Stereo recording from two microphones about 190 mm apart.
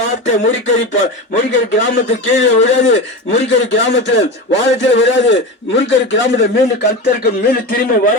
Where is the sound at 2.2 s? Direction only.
75° left (ahead or behind).